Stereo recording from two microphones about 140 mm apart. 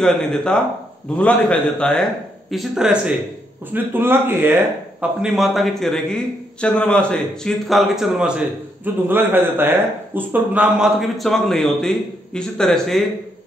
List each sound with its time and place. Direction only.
0.0 s a man's voice: 5° left (ahead or behind)